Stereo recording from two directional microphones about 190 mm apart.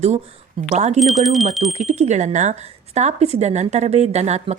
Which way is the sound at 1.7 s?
35° right (ahead or behind).